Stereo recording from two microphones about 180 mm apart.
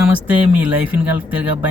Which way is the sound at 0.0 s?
5° right (ahead or behind).